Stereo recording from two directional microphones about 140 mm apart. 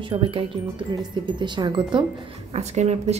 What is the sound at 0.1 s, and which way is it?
Speech, 40° right (ahead or behind).